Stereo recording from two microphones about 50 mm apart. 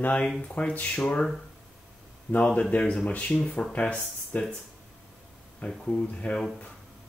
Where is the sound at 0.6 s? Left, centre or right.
Left.